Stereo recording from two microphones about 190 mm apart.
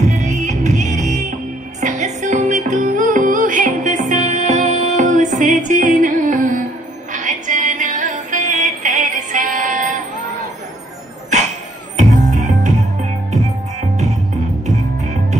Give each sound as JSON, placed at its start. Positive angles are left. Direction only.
{"t": 0.0, "sound": "music", "side_deg": -35}
{"t": 12.0, "sound": "music", "side_deg": -40}